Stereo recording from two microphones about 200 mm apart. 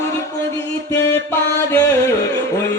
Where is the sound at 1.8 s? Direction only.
15° left (ahead or behind).